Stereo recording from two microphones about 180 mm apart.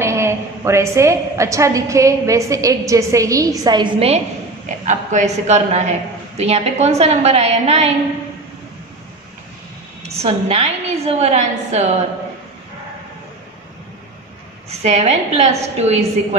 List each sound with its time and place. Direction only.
0.0 s a woman's voice: 15° right (ahead or behind)
4.6 s a man's voice: 45° right (ahead or behind)
10.0 s a man's voice: 35° right (ahead or behind)
14.7 s a man's voice: 35° right (ahead or behind)